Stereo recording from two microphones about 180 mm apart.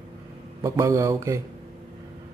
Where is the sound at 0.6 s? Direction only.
20° right (ahead or behind).